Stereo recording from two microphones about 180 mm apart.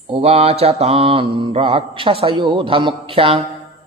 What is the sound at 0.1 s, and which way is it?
Mantra, 35° right (ahead or behind).